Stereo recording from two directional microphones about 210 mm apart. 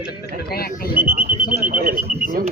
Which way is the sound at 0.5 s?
45° left (ahead or behind).